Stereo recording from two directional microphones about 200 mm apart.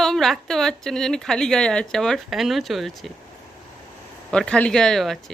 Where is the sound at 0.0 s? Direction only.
Centre (ahead or behind).